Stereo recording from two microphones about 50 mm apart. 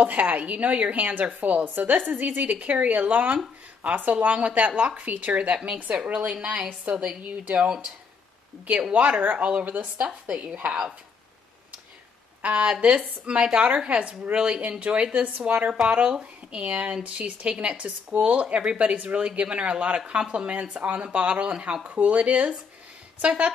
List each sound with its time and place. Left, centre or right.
0.0 s speech: right
6.4 s a woman's voice: centre
6.8 s speech: right
8.9 s speech: right
9.4 s speech: right
10.7 s a woman's voice: centre
12.4 s speech: right